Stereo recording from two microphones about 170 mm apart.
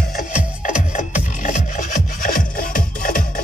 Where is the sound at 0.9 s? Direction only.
45° left (ahead or behind).